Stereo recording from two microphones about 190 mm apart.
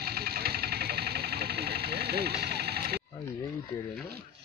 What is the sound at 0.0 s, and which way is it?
Engine, 55° right (ahead or behind).